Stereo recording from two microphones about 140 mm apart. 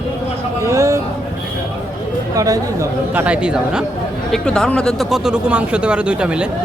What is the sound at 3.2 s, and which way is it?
Speech, 10° right (ahead or behind).